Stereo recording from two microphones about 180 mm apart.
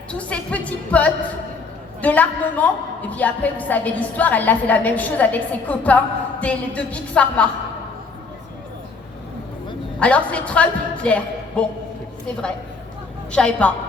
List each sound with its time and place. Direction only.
0.1 s a woman's voice: 5° left (ahead or behind)
10.0 s a woman's voice: 5° left (ahead or behind)
13.3 s a woman's voice: 5° left (ahead or behind)